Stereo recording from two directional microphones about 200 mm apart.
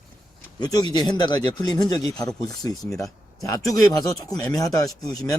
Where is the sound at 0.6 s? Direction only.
20° left (ahead or behind).